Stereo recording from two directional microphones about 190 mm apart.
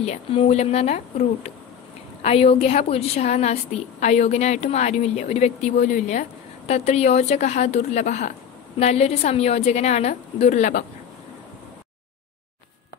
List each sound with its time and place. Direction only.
0.0 s speech: 30° left (ahead or behind)